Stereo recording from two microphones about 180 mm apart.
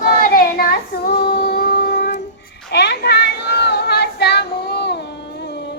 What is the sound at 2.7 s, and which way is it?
Child singing, 65° left (ahead or behind).